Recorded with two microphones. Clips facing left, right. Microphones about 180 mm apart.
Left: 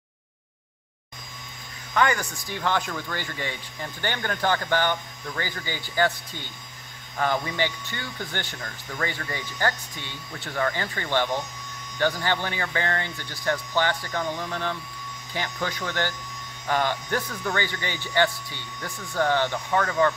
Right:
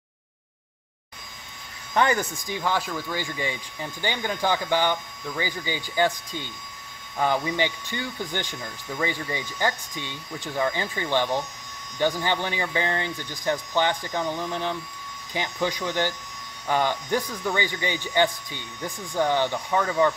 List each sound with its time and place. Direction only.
2.0 s speech: 30° right (ahead or behind)
2.4 s speech: 10° right (ahead or behind)